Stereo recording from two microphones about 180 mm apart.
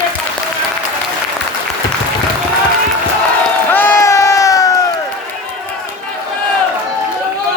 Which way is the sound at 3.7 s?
10° left (ahead or behind).